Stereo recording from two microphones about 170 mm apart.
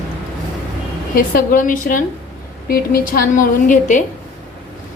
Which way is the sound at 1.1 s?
55° left (ahead or behind).